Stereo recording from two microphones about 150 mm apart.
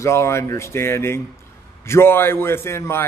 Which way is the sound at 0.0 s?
20° left (ahead or behind).